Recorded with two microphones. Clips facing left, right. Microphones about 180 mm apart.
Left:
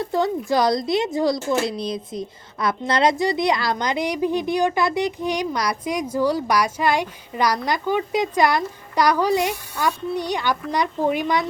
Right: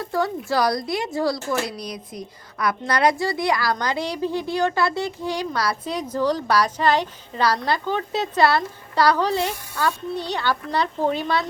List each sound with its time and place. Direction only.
0.0 s speech: 20° left (ahead or behind)